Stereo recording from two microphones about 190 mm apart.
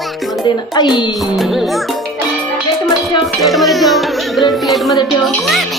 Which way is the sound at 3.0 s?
Centre (ahead or behind).